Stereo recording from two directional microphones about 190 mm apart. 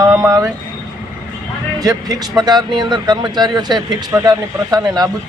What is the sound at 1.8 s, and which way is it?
Speech, 20° right (ahead or behind).